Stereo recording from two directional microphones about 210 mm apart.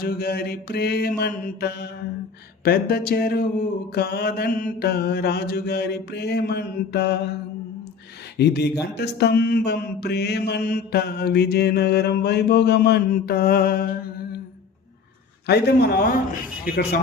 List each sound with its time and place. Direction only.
0.0 s mantra: 50° left (ahead or behind)
8.4 s mantra: 50° left (ahead or behind)
15.4 s mantra: 50° left (ahead or behind)